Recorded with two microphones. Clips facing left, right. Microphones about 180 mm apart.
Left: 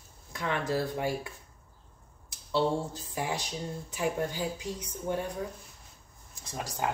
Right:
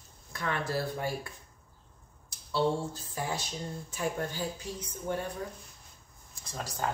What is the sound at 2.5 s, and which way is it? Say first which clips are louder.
Speech: left 1 dB; 15° left (ahead or behind).